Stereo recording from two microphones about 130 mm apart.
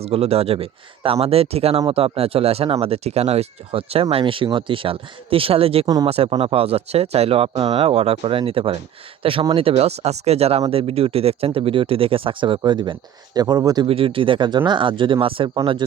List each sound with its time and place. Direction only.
0.0 s speech: 50° right (ahead or behind)
5.8 s speech: 30° right (ahead or behind)
6.1 s speech: 50° right (ahead or behind); by 13.8 s 30° right (ahead or behind)
13.8 s speech: 45° right (ahead or behind)